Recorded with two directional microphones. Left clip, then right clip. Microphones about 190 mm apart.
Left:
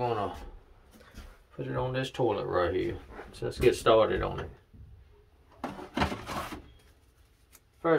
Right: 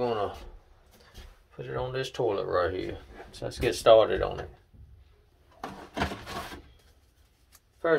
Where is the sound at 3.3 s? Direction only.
35° right (ahead or behind).